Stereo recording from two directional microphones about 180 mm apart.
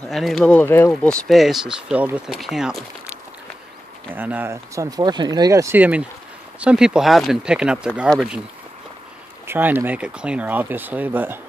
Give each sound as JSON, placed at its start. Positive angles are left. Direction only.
{"t": 0.1, "sound": "speech", "side_deg": 0}
{"t": 9.5, "sound": "speech", "side_deg": -10}